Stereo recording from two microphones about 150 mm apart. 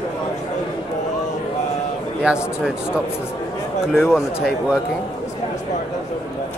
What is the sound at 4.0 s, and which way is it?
Speech, 15° left (ahead or behind).